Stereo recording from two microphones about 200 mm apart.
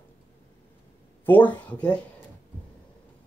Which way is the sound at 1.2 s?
10° left (ahead or behind).